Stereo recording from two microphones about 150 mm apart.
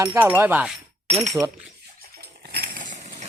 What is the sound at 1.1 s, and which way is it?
Speech, 45° right (ahead or behind).